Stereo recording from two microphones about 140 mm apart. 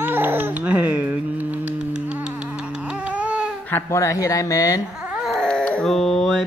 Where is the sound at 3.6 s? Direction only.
15° left (ahead or behind).